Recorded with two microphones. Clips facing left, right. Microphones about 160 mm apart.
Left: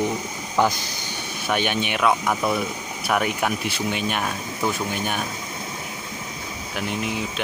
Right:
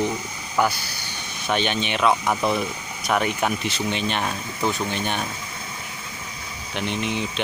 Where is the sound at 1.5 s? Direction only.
10° left (ahead or behind).